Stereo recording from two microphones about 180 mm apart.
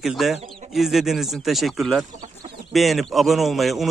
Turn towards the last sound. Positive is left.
turn(degrees=0)  # may be behind; listen again after turning